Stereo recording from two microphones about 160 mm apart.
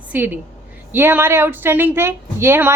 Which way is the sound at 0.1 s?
10° right (ahead or behind).